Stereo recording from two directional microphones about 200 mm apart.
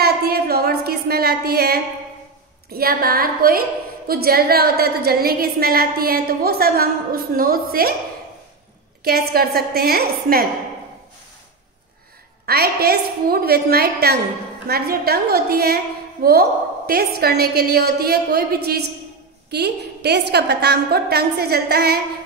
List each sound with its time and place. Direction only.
0.0 s a sound: 50° right (ahead or behind)
2.7 s a woman's voice: 50° right (ahead or behind)
9.0 s a woman's voice: 50° right (ahead or behind)
12.4 s a woman's voice: 50° right (ahead or behind)